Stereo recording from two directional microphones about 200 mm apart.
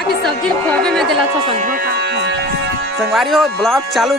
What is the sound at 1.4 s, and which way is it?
Speech, 25° right (ahead or behind).